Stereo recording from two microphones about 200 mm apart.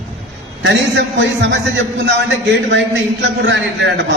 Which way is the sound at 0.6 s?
65° right (ahead or behind).